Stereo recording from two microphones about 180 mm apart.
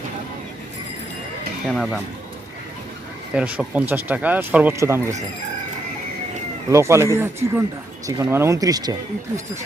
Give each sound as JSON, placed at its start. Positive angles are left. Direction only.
{"t": 1.6, "sound": "speech", "side_deg": 0}
{"t": 3.3, "sound": "speech", "side_deg": -5}
{"t": 6.7, "sound": "speech", "side_deg": -15}